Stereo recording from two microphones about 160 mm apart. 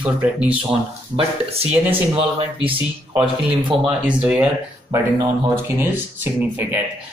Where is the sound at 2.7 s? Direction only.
35° right (ahead or behind).